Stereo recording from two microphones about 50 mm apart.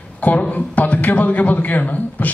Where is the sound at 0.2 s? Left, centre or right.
Left.